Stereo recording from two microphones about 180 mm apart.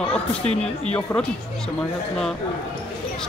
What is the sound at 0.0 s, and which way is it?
Speech, 5° left (ahead or behind).